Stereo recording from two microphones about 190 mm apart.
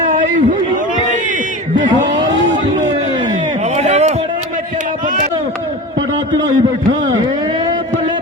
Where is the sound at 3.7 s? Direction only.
35° right (ahead or behind).